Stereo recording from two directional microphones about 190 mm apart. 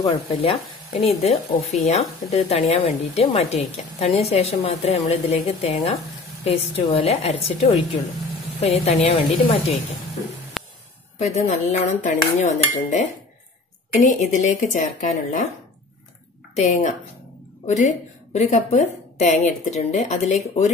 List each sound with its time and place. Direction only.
0.1 s speech: 30° left (ahead or behind)
10.6 s a sound: centre (ahead or behind)
11.1 s speech: 35° left (ahead or behind)
16.5 s speech: 35° left (ahead or behind)